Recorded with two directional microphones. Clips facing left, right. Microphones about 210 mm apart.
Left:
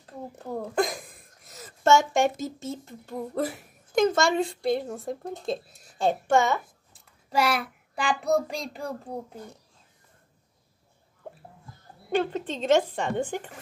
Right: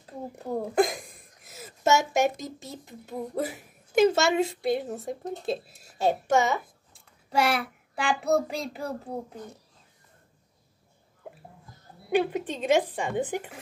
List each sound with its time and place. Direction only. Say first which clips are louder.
0.0 s a sound: right 2 dB; 10° right (ahead or behind)
2.9 s a child's voice: even; 10° right (ahead or behind)
7.2 s a child's voice: even; centre (ahead or behind)
12.1 s speech: right 1 dB; 10° right (ahead or behind)